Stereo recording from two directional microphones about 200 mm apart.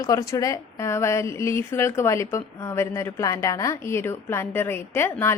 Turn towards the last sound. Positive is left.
turn(degrees=10)  # may be behind; listen again after turning